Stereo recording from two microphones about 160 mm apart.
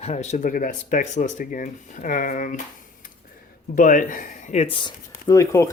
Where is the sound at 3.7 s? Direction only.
55° left (ahead or behind); by 4.9 s 35° left (ahead or behind).